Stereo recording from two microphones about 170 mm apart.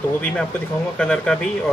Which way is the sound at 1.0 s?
5° left (ahead or behind).